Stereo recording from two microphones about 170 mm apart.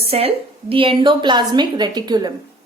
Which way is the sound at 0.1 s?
35° right (ahead or behind).